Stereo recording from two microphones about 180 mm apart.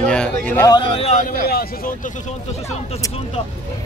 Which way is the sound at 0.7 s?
30° left (ahead or behind).